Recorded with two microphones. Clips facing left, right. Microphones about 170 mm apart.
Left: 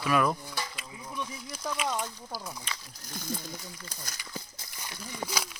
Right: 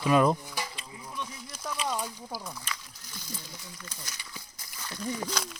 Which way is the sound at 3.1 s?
50° left (ahead or behind).